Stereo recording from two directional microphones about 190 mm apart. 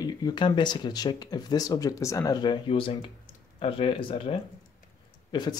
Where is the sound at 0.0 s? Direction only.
20° left (ahead or behind).